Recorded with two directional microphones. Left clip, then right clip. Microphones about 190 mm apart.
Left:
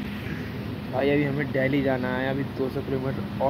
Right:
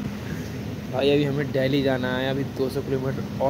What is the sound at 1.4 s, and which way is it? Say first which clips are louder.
Speech: right 2 dB; 10° right (ahead or behind).